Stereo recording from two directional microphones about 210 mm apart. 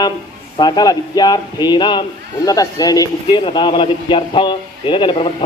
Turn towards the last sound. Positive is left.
turn(degrees=25)  # may be behind; listen again after turning